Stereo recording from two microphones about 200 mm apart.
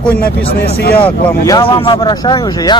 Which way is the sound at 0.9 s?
10° left (ahead or behind).